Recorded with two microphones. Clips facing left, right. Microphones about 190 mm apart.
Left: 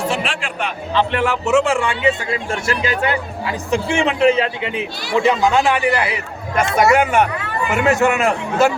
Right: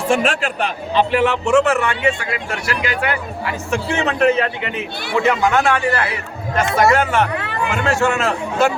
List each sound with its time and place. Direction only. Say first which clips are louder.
0.1 s a man's voice: right 5 dB; 45° right (ahead or behind)
1.1 s speech: right 2 dB; centre (ahead or behind); by 8.3 s 15° left (ahead or behind)